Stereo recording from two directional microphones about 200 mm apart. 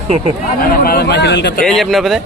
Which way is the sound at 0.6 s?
45° left (ahead or behind).